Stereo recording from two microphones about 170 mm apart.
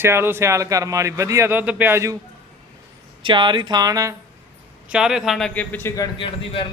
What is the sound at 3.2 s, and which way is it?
Speech, 30° right (ahead or behind).